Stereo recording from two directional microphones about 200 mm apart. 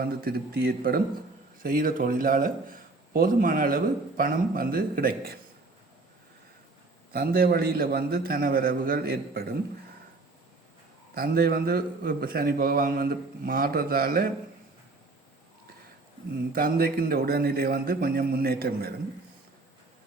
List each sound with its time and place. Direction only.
0.0 s a man's voice: 50° right (ahead or behind)
7.1 s a man's voice: 45° right (ahead or behind)
11.1 s a man's voice: 50° right (ahead or behind)
16.5 s a man's voice: 45° right (ahead or behind)